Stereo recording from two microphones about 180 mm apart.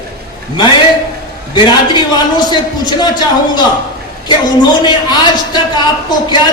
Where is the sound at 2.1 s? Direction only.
25° left (ahead or behind).